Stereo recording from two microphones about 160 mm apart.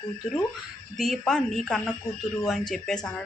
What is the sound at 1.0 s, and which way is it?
Speech, centre (ahead or behind).